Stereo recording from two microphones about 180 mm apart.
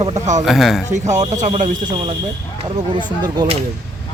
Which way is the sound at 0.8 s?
40° right (ahead or behind).